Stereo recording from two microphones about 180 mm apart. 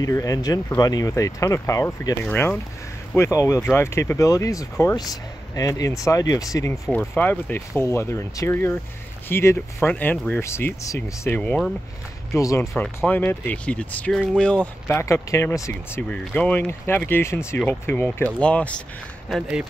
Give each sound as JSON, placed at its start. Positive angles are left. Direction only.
{"t": 0.0, "sound": "speech", "side_deg": 20}